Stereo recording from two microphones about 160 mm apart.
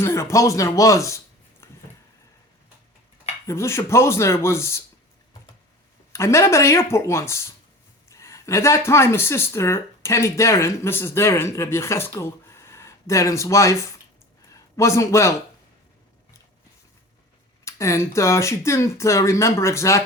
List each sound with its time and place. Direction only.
0.0 s speech: 15° left (ahead or behind)
1.6 s a sound: 15° left (ahead or behind)
3.4 s speech: 15° left (ahead or behind)
6.1 s speech: 20° left (ahead or behind)
17.7 s speech: 20° left (ahead or behind)